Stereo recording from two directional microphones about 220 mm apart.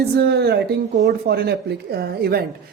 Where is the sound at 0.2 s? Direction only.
45° right (ahead or behind).